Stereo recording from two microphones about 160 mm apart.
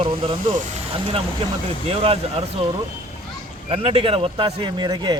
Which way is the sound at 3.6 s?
40° right (ahead or behind).